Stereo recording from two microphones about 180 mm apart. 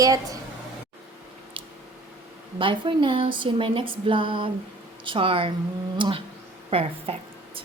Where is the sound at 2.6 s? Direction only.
30° right (ahead or behind).